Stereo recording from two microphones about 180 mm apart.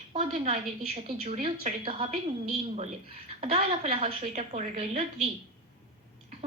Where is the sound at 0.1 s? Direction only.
45° right (ahead or behind).